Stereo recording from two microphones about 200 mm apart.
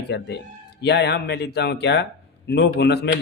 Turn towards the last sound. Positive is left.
turn(degrees=60)  # may be behind; listen again after turning